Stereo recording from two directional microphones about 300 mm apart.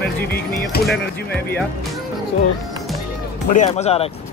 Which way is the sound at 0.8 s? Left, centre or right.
Centre.